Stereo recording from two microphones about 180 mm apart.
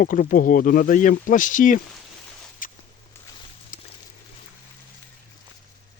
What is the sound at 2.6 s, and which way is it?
Walk, 50° left (ahead or behind).